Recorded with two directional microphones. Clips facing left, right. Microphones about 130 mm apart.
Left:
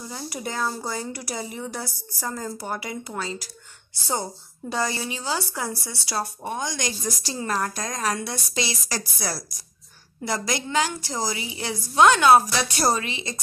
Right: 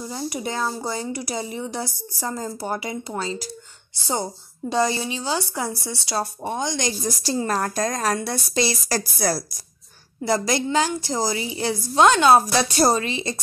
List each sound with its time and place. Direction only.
0.0 s a woman's voice: 20° right (ahead or behind); by 9.4 s 40° right (ahead or behind)
10.2 s a woman's voice: 30° right (ahead or behind)